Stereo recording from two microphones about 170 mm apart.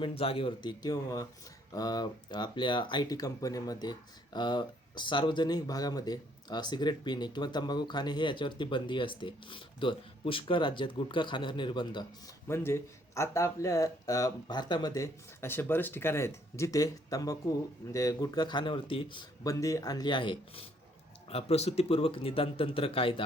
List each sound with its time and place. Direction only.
0.0 s speech: 35° left (ahead or behind)
12.5 s a man's voice: 15° left (ahead or behind); by 23.2 s 35° left (ahead or behind)